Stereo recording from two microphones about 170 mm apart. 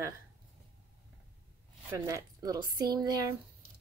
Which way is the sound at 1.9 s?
20° right (ahead or behind).